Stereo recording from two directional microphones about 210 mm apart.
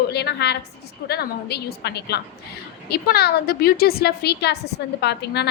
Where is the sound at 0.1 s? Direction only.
50° left (ahead or behind).